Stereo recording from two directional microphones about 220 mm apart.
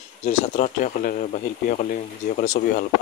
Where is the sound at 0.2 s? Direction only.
30° left (ahead or behind).